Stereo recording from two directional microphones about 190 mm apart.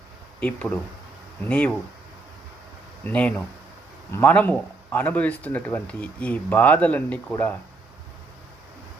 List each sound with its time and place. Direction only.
0.3 s speech: 5° left (ahead or behind)
3.0 s speech: 5° left (ahead or behind)